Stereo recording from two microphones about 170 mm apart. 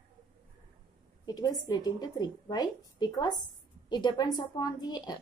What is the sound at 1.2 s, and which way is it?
A woman's voice, 25° left (ahead or behind).